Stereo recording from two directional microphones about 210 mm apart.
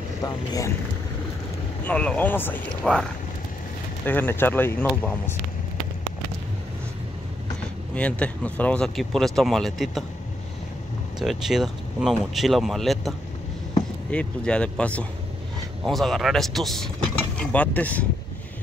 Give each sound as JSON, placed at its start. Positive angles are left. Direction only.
{"t": 0.2, "sound": "speech", "side_deg": 15}
{"t": 1.9, "sound": "speech", "side_deg": 5}
{"t": 7.9, "sound": "speech", "side_deg": 5}
{"t": 11.1, "sound": "speech", "side_deg": 0}
{"t": 14.1, "sound": "speech", "side_deg": 5}